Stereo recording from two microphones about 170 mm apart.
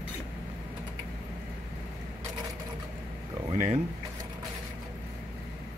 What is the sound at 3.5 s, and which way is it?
Speech, 35° right (ahead or behind).